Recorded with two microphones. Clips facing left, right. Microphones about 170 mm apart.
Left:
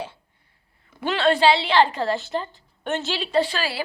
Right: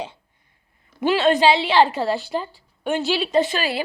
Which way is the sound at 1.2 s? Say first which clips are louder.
Even; 15° right (ahead or behind).